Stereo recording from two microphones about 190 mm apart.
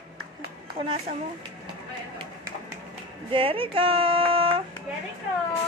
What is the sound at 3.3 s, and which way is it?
Speech, 30° right (ahead or behind).